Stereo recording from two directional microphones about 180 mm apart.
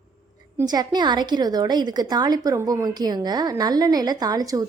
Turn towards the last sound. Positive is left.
turn(degrees=-20)  # may be behind; listen again after turning